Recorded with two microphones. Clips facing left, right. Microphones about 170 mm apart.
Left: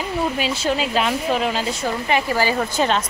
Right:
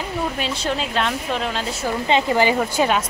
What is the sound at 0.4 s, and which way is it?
Speech, 5° left (ahead or behind).